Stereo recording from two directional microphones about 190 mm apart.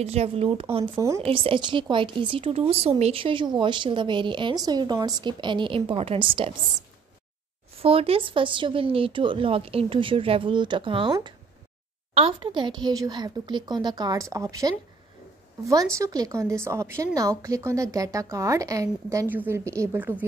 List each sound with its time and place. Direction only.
0.0 s speech: 35° right (ahead or behind)
0.9 s a woman's voice: 15° right (ahead or behind)
1.2 s speech: 30° right (ahead or behind)
7.8 s a woman's voice: 30° right (ahead or behind); by 20.2 s 10° right (ahead or behind)